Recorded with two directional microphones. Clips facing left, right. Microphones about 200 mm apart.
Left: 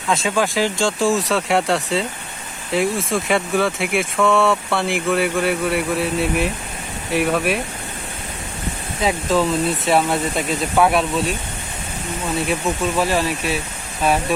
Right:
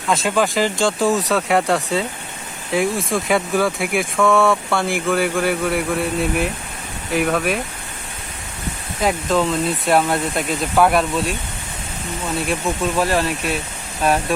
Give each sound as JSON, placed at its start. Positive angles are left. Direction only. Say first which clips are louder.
{"t": 0.1, "sound": "speech", "louder": "right 1 dB", "side_deg": 0}
{"t": 9.0, "sound": "speech", "louder": "even", "side_deg": 0}
{"t": 12.5, "sound": "speech", "louder": "right 1 dB", "side_deg": 0}